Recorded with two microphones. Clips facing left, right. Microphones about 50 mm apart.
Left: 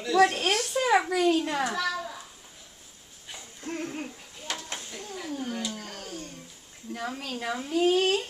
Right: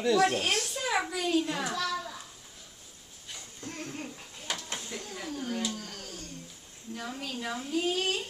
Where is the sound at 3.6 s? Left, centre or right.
Left.